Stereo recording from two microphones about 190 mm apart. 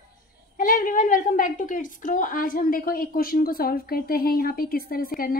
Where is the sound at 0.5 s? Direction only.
45° left (ahead or behind).